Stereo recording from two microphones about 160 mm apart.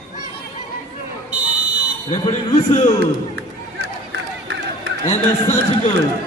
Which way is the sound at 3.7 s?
90° right.